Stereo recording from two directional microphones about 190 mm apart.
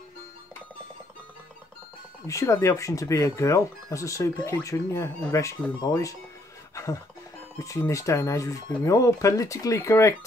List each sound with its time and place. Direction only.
2.2 s speech: 15° left (ahead or behind)
6.7 s a sound: 15° left (ahead or behind)
7.5 s speech: 15° left (ahead or behind)